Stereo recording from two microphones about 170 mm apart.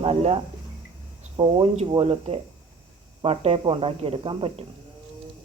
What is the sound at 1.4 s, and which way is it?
Speech, 30° right (ahead or behind).